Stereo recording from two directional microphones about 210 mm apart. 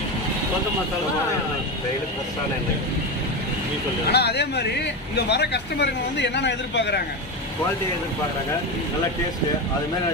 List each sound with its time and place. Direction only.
4.1 s speech: 50° left (ahead or behind)